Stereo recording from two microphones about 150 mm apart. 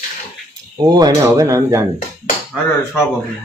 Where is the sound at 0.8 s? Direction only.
25° right (ahead or behind).